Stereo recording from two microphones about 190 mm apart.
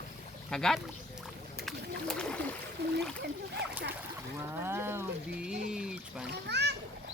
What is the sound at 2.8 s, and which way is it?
Splash, 60° right (ahead or behind).